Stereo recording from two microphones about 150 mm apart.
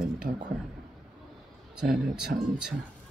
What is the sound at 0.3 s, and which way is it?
Speech, 65° right (ahead or behind).